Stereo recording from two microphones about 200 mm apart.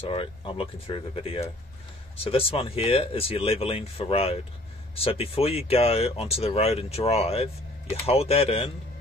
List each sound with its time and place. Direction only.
0.1 s speech: 25° left (ahead or behind)